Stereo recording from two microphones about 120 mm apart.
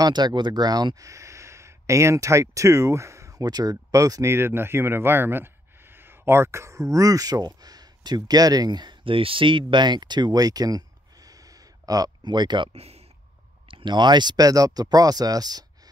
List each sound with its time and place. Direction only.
0.0 s speech: 35° right (ahead or behind)
12.7 s speech: 60° right (ahead or behind)
13.7 s speech: 40° right (ahead or behind)